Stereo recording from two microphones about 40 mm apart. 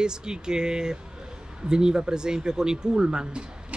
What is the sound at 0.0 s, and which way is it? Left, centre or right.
Speech, centre.